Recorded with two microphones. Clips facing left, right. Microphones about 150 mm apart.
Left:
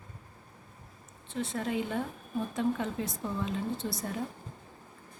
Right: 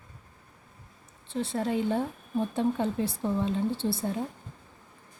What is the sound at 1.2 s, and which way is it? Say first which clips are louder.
A woman's voice: right 4 dB; 30° right (ahead or behind).